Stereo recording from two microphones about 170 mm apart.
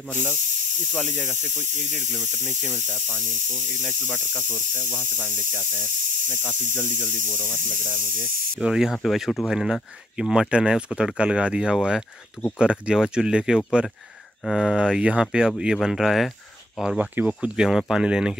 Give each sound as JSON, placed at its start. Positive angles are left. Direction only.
{"t": 1.1, "sound": "speech", "side_deg": 15}
{"t": 1.7, "sound": "speech", "side_deg": -45}
{"t": 3.8, "sound": "speech", "side_deg": 10}
{"t": 6.9, "sound": "speech", "side_deg": -50}
{"t": 7.2, "sound": "speech", "side_deg": 10}
{"t": 8.5, "sound": "speech", "side_deg": -5}